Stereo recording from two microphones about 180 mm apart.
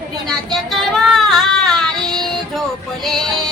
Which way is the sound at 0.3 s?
Centre (ahead or behind).